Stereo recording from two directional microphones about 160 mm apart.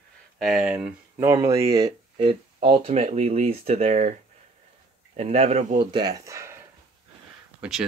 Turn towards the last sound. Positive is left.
turn(degrees=-5)  # may be behind; listen again after turning